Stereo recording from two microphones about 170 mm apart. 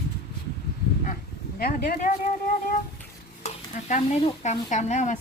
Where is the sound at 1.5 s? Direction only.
60° left (ahead or behind).